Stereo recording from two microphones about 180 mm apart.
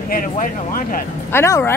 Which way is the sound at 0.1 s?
50° left (ahead or behind).